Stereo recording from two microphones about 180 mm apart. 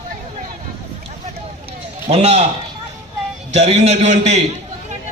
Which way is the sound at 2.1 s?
35° right (ahead or behind).